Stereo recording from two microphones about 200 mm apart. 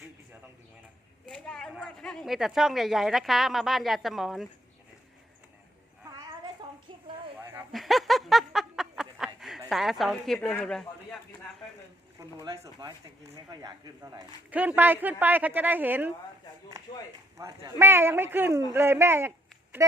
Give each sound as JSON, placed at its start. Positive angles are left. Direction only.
{"t": 1.3, "sound": "a woman's voice", "side_deg": 5}
{"t": 6.1, "sound": "a sound", "side_deg": -20}
{"t": 7.7, "sound": "a sound", "side_deg": 0}
{"t": 9.6, "sound": "a woman's voice", "side_deg": 0}
{"t": 12.4, "sound": "speech", "side_deg": -20}
{"t": 16.9, "sound": "speech", "side_deg": 20}
{"t": 17.3, "sound": "speech", "side_deg": -15}